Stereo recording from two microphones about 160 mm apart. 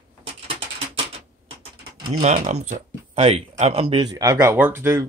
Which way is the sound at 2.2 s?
45° right (ahead or behind).